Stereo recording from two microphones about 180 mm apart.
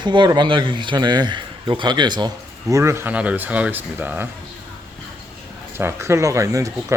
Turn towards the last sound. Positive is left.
turn(degrees=-20)  # may be behind; listen again after turning